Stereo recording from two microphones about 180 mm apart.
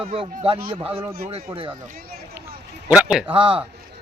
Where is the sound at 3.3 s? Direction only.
30° right (ahead or behind).